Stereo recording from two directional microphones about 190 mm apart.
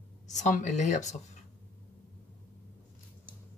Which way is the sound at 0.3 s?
40° left (ahead or behind).